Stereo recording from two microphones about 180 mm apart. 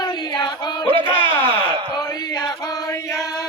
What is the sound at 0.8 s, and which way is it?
Speech, 30° right (ahead or behind).